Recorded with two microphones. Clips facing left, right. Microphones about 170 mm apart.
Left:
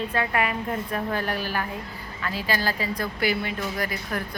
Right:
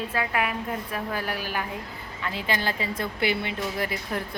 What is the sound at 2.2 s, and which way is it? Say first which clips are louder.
Speech: left 1 dB; 25° right (ahead or behind).